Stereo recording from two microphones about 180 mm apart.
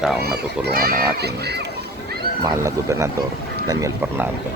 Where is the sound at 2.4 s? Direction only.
15° right (ahead or behind).